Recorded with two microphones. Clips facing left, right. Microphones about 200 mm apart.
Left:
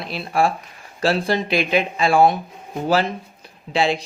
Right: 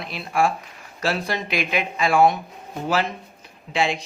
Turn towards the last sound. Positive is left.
turn(degrees=35)  # may be behind; listen again after turning